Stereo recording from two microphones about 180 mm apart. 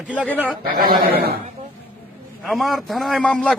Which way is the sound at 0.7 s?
55° right (ahead or behind).